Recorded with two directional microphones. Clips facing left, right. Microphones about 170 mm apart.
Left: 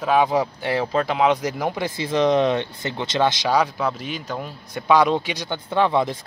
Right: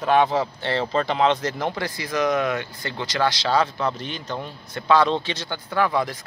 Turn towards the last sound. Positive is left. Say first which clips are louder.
# left 3 dB
turn(degrees=25)  # may be behind; listen again after turning